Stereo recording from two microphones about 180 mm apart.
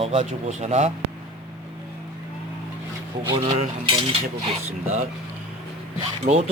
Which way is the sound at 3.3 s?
30° right (ahead or behind).